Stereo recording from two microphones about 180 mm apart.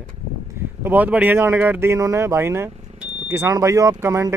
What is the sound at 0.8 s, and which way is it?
Speech, 10° right (ahead or behind).